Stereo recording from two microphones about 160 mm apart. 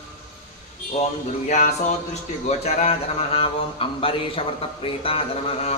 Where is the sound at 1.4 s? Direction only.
50° left (ahead or behind).